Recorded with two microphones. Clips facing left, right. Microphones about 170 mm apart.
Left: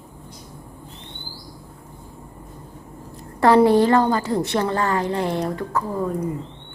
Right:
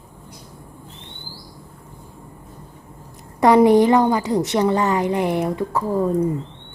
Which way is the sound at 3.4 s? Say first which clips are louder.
Right 2 dB; 15° right (ahead or behind).